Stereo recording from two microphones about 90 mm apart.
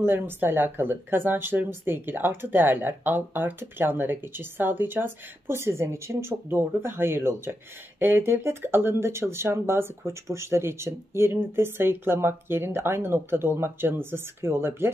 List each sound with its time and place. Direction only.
0.0 s speech: 25° right (ahead or behind)